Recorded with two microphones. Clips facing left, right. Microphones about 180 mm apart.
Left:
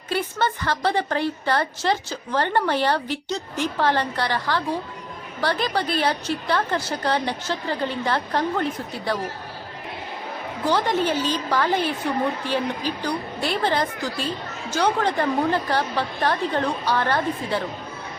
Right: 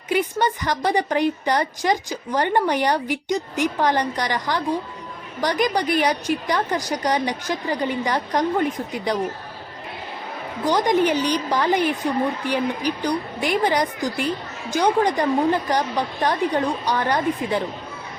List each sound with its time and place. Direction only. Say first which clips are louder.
0.1 s a woman's voice: right 3 dB; 15° right (ahead or behind)
10.7 s a woman's voice: right 3 dB; 15° right (ahead or behind)